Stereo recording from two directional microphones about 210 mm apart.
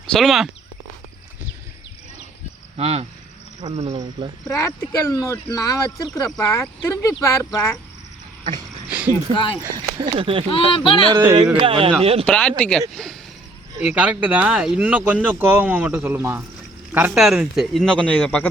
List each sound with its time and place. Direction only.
0.1 s speech: centre (ahead or behind)
2.7 s speech: 30° right (ahead or behind)
4.4 s speech: 15° left (ahead or behind)
8.9 s a sound: 5° right (ahead or behind)
9.3 s speech: 20° left (ahead or behind)
9.7 s speech: 25° right (ahead or behind)
10.5 s speech: 25° left (ahead or behind)
11.1 s speech: 20° right (ahead or behind)
12.2 s speech: 5° left (ahead or behind)